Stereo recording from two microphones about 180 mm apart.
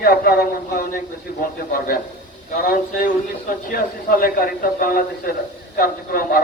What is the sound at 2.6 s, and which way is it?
A man's voice, 50° left (ahead or behind).